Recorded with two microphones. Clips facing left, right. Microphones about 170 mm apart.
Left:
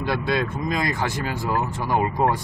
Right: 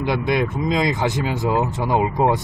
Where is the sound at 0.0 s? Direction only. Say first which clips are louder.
Right 3 dB; 20° right (ahead or behind).